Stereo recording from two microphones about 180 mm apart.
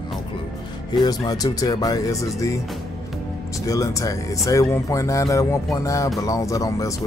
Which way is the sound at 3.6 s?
20° left (ahead or behind).